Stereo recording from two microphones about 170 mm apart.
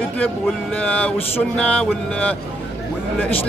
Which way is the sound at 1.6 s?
5° left (ahead or behind).